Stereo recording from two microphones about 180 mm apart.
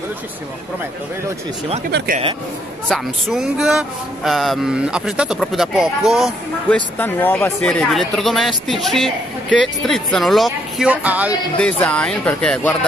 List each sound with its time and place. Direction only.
1.9 s speech: 70° right (ahead or behind)
2.9 s speech: centre (ahead or behind)
7.0 s speech: 10° left (ahead or behind); by 11.3 s 10° right (ahead or behind)
11.5 s speech: 5° left (ahead or behind)